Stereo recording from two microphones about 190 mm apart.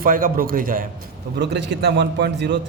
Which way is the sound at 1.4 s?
65° right (ahead or behind).